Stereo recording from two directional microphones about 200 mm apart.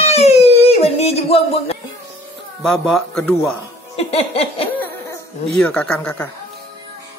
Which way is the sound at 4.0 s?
30° left (ahead or behind).